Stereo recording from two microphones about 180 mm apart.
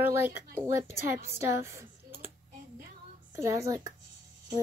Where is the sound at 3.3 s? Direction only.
15° right (ahead or behind).